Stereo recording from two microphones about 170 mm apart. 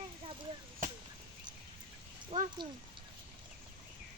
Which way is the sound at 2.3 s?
25° right (ahead or behind).